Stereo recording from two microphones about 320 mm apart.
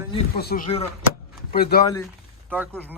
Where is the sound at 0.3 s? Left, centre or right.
Left.